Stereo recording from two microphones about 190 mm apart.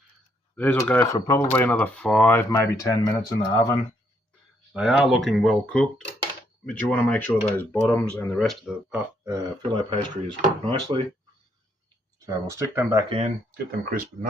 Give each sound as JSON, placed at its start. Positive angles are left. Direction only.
{"t": 0.5, "sound": "speech", "side_deg": 10}
{"t": 4.7, "sound": "speech", "side_deg": -5}
{"t": 9.9, "sound": "speech", "side_deg": -25}
{"t": 12.2, "sound": "speech", "side_deg": -15}
{"t": 13.1, "sound": "speech", "side_deg": -35}
{"t": 13.7, "sound": "speech", "side_deg": -45}